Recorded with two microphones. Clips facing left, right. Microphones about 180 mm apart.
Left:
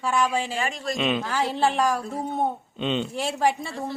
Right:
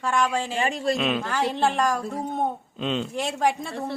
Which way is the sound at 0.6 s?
30° right (ahead or behind).